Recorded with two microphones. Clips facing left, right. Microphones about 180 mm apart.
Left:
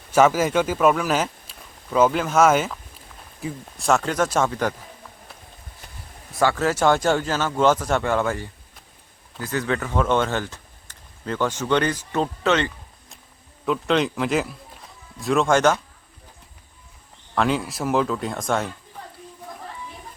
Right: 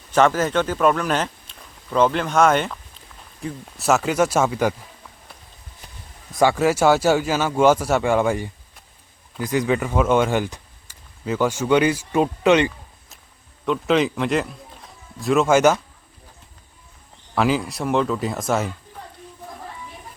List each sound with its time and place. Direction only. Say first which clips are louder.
0.1 s a man's voice: even; 10° left (ahead or behind); by 4.7 s 10° right (ahead or behind)
6.3 s a man's voice: right 3 dB; 15° right (ahead or behind)
13.7 s speech: right 2 dB; centre (ahead or behind)
17.3 s speech: right 2 dB; centre (ahead or behind)